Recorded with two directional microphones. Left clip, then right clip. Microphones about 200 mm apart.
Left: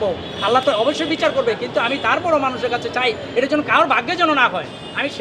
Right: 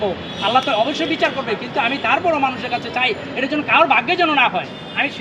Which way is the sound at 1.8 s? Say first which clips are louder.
Right 2 dB; 15° left (ahead or behind).